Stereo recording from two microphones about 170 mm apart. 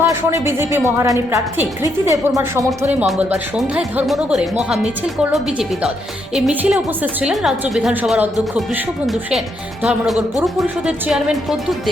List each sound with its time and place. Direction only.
0.0 s a woman's voice: 15° right (ahead or behind)
2.6 s a woman's voice: 5° right (ahead or behind)